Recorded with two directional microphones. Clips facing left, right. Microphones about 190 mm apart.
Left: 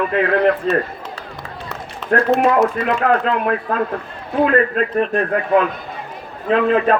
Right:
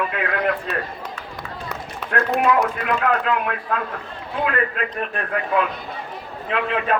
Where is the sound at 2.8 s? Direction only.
35° left (ahead or behind).